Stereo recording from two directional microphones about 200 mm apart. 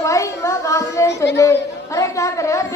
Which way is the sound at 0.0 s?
15° left (ahead or behind).